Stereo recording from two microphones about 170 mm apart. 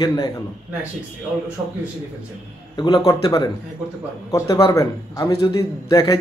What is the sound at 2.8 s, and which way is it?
A man's voice, 20° left (ahead or behind).